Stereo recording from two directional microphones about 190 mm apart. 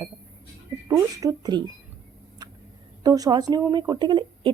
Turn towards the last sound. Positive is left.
turn(degrees=-25)  # may be behind; listen again after turning